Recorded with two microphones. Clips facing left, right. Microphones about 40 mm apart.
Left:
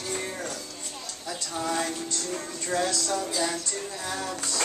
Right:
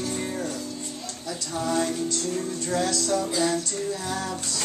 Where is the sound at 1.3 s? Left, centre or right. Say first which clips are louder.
Right 2 dB; centre.